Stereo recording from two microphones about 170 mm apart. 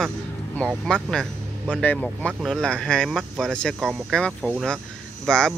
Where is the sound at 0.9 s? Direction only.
5° left (ahead or behind).